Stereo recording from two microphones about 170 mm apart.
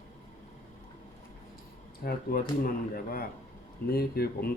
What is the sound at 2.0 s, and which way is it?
Speech, 55° left (ahead or behind).